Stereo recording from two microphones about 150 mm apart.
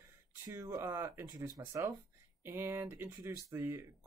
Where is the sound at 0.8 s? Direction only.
15° right (ahead or behind).